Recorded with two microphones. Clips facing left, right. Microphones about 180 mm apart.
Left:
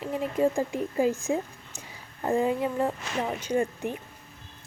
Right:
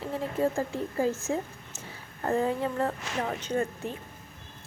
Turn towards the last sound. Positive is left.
turn(degrees=15)  # may be behind; listen again after turning